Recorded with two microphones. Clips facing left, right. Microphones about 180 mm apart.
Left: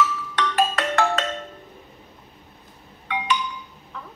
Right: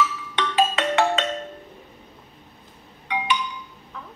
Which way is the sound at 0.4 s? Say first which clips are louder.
Right 1 dB; 15° right (ahead or behind).